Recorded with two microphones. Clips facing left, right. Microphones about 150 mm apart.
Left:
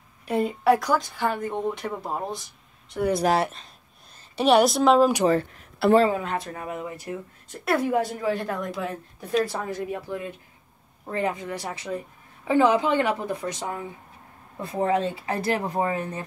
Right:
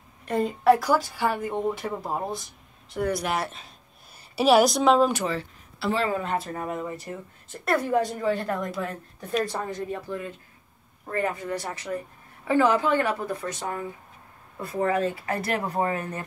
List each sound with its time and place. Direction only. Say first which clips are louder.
0.2 s speech: left 1 dB; 5° left (ahead or behind)
4.4 s speech: even; centre (ahead or behind)
5.2 s speech: left 8 dB; 45° left (ahead or behind)
5.6 s a sound: left 8 dB; 60° left (ahead or behind)
6.2 s a woman's voice: right 1 dB; centre (ahead or behind); by 16.2 s 20° left (ahead or behind)